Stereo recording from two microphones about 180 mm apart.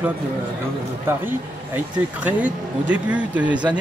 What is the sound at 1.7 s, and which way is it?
Speech, 10° right (ahead or behind).